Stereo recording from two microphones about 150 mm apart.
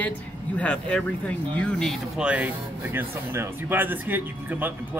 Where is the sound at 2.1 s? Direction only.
10° right (ahead or behind).